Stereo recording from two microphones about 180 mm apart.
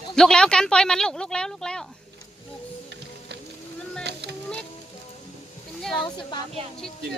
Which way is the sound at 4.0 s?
70° right (ahead or behind).